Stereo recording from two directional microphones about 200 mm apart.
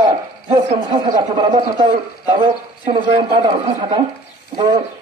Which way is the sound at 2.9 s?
25° right (ahead or behind).